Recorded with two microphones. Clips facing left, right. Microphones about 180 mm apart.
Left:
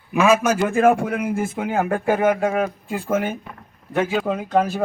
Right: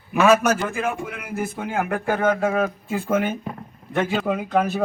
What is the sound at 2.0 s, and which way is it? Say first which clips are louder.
Speech: left 1 dB; 10° left (ahead or behind).